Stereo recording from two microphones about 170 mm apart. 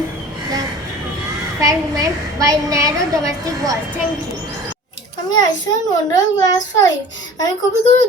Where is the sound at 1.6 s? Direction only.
20° right (ahead or behind).